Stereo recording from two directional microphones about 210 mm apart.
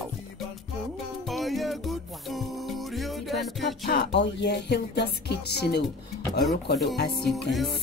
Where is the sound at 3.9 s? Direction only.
50° left (ahead or behind).